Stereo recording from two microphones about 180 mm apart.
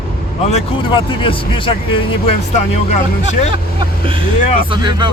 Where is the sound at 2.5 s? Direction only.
40° left (ahead or behind).